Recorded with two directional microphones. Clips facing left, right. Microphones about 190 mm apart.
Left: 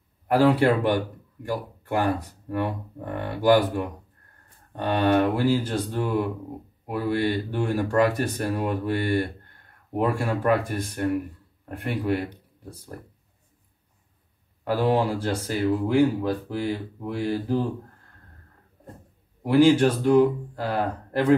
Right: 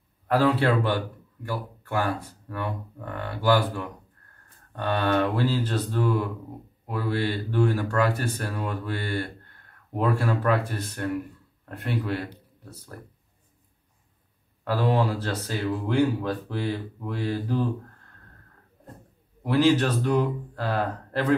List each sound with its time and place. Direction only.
0.3 s speech: 15° left (ahead or behind)
14.6 s speech: 15° left (ahead or behind)
19.4 s speech: 10° left (ahead or behind)